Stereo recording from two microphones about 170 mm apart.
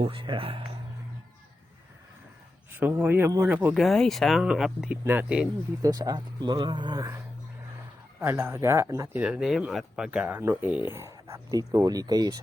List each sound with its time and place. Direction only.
0.0 s speech: 30° right (ahead or behind)
2.7 s speech: 10° right (ahead or behind)
3.8 s speech: centre (ahead or behind)
5.8 s speech: 20° right (ahead or behind)
8.2 s speech: 15° right (ahead or behind)
9.2 s speech: 5° right (ahead or behind); by 12.4 s 20° right (ahead or behind)